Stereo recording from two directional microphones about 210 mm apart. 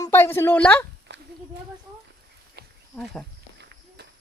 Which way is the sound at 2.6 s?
50° right (ahead or behind).